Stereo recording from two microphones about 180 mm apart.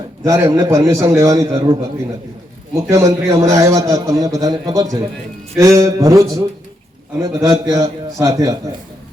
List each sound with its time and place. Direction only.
0.3 s a man's voice: 15° right (ahead or behind)
2.9 s a man's voice: 15° right (ahead or behind)